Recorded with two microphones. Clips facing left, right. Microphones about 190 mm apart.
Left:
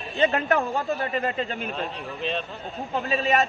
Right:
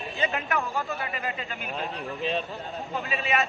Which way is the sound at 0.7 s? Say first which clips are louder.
Left 5 dB; 35° left (ahead or behind).